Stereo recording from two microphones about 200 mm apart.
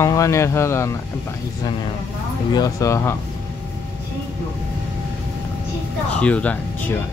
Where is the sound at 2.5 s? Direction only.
15° left (ahead or behind).